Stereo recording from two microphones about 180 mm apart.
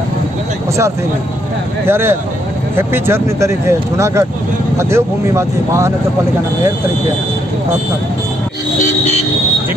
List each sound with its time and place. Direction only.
1.9 s speech: 15° right (ahead or behind)